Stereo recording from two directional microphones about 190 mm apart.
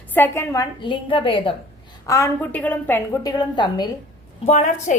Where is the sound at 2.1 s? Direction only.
15° left (ahead or behind).